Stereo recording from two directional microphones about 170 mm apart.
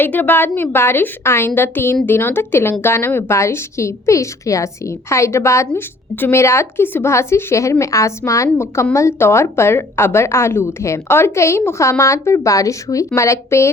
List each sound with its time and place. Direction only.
0.0 s a woman's voice: 10° left (ahead or behind)